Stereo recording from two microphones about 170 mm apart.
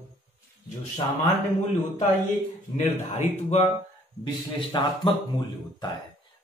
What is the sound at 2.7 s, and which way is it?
Speech, 40° left (ahead or behind).